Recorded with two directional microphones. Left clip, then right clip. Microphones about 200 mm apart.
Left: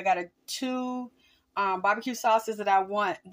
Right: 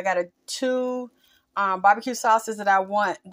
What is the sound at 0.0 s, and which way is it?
Speech, 25° right (ahead or behind).